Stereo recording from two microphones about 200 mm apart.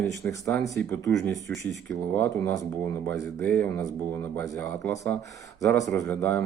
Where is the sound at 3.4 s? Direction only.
10° left (ahead or behind).